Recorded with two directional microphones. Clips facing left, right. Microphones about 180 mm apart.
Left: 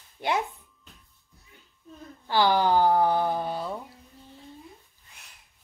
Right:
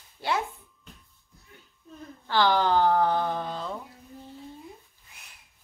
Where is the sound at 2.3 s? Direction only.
10° left (ahead or behind).